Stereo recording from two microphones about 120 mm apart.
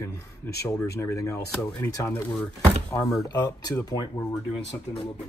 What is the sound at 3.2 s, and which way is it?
Speech, 35° left (ahead or behind).